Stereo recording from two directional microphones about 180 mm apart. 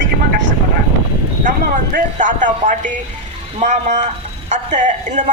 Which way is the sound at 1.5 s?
45° right (ahead or behind).